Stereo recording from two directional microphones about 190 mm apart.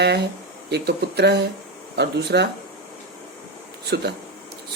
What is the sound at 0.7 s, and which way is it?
Speech, 60° right (ahead or behind).